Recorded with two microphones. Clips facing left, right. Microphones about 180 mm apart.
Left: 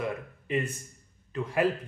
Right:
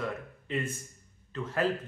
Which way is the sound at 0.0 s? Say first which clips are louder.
Left 2 dB; 15° left (ahead or behind).